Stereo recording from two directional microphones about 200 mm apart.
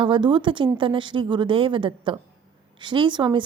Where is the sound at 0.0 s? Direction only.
25° right (ahead or behind).